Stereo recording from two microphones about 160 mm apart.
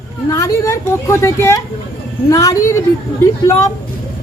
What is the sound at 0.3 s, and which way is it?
A woman's voice, 20° left (ahead or behind).